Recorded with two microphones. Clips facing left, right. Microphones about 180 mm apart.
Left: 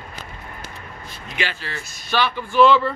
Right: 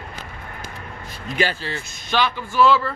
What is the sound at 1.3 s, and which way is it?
Speech, 35° right (ahead or behind).